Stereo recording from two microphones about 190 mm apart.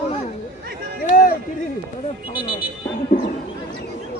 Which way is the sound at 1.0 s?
45° left (ahead or behind).